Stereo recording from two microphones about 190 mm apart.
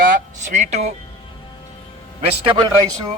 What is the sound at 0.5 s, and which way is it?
Speech, 40° right (ahead or behind).